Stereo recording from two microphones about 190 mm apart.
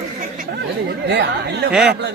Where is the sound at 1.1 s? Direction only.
65° right (ahead or behind).